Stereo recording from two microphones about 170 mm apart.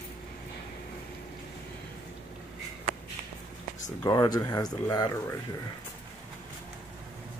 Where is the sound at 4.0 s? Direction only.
25° left (ahead or behind).